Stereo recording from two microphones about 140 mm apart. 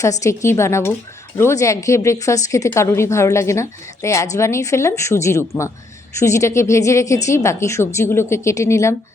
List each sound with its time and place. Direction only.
0.0 s a woman's voice: 20° left (ahead or behind)